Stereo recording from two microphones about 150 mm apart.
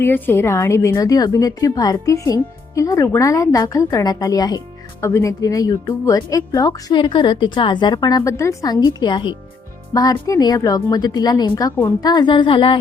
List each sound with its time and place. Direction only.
0.0 s a woman's voice: 15° left (ahead or behind)
11.9 s music: 30° left (ahead or behind)